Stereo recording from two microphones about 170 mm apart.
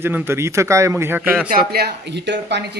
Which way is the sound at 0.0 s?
10° right (ahead or behind).